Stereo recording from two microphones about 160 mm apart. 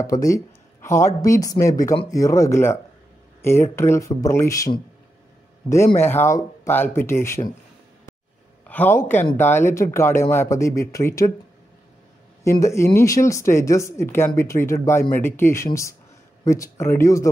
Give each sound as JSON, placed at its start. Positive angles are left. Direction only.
{"t": 0.0, "sound": "speech", "side_deg": 20}
{"t": 5.9, "sound": "speech", "side_deg": 15}
{"t": 8.6, "sound": "a man's voice", "side_deg": 10}
{"t": 12.4, "sound": "speech", "side_deg": 20}